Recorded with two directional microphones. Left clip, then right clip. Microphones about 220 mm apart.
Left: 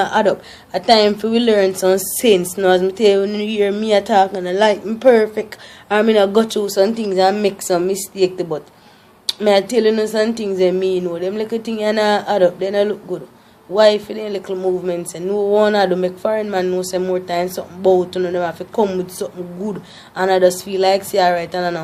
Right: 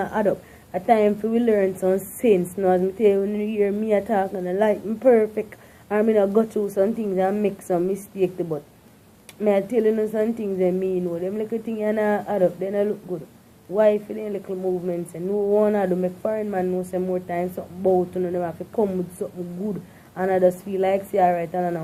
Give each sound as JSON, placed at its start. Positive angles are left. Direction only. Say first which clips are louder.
{"t": 0.0, "sound": "speech", "louder": "left 8 dB", "side_deg": 20}